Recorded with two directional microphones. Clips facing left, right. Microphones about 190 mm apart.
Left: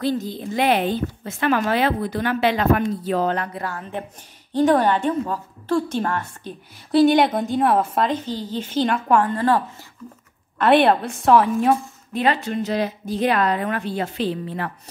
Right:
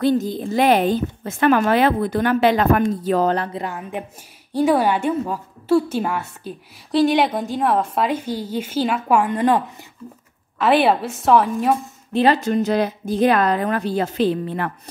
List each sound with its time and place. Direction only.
0.0 s a woman's voice: 45° right (ahead or behind)
3.5 s a woman's voice: 15° right (ahead or behind); by 8.1 s centre (ahead or behind)
8.1 s a woman's voice: 10° right (ahead or behind)
10.6 s a woman's voice: centre (ahead or behind)
12.1 s a woman's voice: 35° right (ahead or behind); by 14.7 s 50° right (ahead or behind)